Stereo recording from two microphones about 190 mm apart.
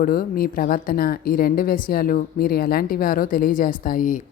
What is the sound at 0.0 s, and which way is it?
Speech, 45° left (ahead or behind).